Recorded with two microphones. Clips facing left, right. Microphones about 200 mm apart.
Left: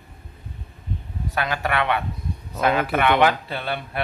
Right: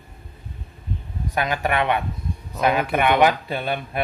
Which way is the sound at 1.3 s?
15° right (ahead or behind).